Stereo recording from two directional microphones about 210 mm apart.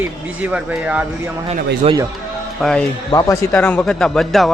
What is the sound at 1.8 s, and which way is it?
Speech, 30° right (ahead or behind).